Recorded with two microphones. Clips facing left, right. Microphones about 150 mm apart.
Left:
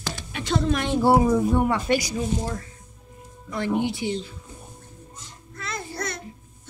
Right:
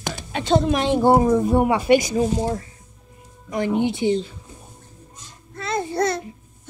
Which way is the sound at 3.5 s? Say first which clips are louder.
Right 4 dB; 20° right (ahead or behind).